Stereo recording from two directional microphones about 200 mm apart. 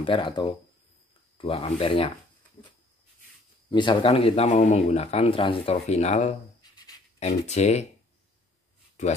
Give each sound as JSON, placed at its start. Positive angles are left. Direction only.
{"t": 0.0, "sound": "speech", "side_deg": 25}
{"t": 3.7, "sound": "speech", "side_deg": 25}